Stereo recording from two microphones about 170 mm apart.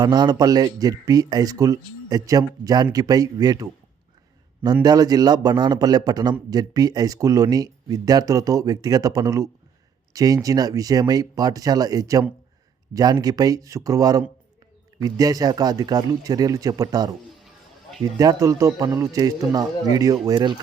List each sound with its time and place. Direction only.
0.0 s speech: 25° right (ahead or behind)
18.2 s speech: 20° right (ahead or behind)